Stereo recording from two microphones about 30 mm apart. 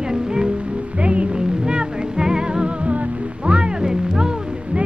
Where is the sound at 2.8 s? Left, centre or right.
Right.